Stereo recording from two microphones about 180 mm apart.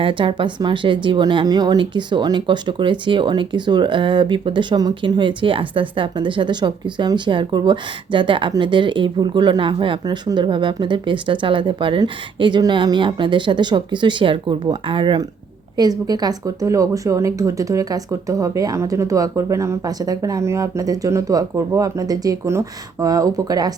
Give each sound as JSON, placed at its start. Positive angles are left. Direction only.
{"t": 0.0, "sound": "speech", "side_deg": -30}